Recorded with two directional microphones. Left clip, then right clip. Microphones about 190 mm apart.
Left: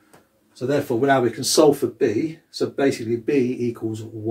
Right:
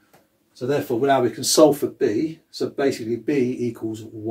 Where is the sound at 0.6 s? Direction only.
25° right (ahead or behind).